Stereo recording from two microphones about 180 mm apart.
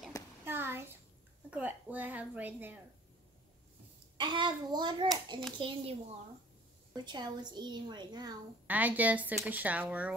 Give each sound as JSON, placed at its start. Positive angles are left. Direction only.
{"t": 0.5, "sound": "a sound", "side_deg": -10}
{"t": 1.5, "sound": "speech", "side_deg": -10}
{"t": 4.2, "sound": "a woman's voice", "side_deg": -25}
{"t": 8.6, "sound": "speech", "side_deg": -10}